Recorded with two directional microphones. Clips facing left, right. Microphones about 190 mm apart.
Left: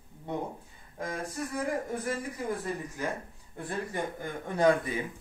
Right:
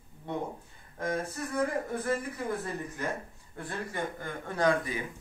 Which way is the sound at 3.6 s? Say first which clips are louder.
Left 2 dB; 15° left (ahead or behind).